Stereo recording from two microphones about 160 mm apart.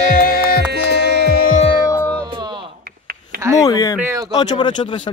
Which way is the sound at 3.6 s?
25° left (ahead or behind).